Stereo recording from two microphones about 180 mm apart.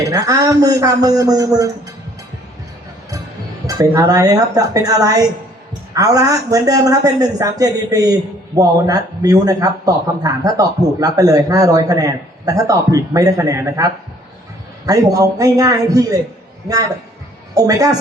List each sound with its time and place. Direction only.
0.1 s a man's voice: 20° right (ahead or behind)
3.7 s a man's voice: 20° right (ahead or behind)
17.5 s a woman's voice: 20° right (ahead or behind)